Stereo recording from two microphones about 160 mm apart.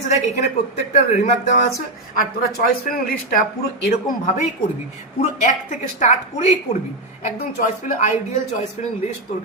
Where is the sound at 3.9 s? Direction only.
45° left (ahead or behind).